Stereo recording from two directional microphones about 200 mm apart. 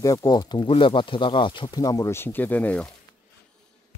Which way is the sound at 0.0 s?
15° left (ahead or behind).